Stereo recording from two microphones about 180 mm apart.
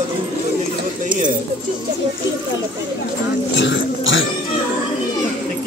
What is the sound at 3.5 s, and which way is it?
Speech, 90° left.